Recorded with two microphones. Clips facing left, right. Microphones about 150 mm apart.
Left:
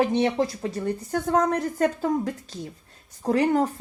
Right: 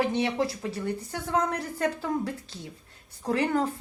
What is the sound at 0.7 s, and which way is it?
Speech, 45° left (ahead or behind).